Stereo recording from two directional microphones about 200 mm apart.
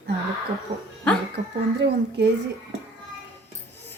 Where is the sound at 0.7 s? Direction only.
25° right (ahead or behind).